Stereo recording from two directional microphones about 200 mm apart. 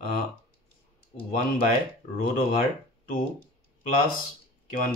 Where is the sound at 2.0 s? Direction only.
35° left (ahead or behind).